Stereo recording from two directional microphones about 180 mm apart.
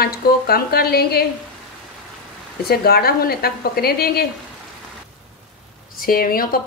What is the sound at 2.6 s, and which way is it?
A woman's voice, 60° left (ahead or behind).